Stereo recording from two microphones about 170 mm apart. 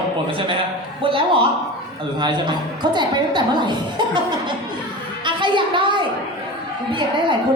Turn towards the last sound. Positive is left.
turn(degrees=-30)  # may be behind; listen again after turning